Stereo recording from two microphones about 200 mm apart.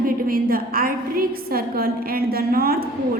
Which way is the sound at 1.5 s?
45° right (ahead or behind).